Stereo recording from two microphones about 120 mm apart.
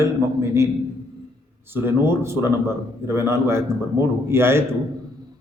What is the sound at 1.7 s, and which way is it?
A man's voice, 20° right (ahead or behind).